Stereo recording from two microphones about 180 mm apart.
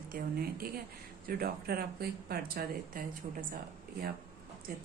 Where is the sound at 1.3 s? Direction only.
55° right (ahead or behind).